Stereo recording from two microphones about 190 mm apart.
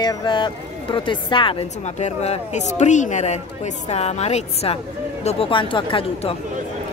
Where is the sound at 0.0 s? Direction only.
20° left (ahead or behind).